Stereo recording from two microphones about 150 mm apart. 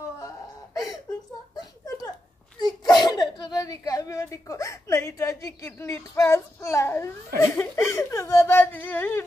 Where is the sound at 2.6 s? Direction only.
30° left (ahead or behind).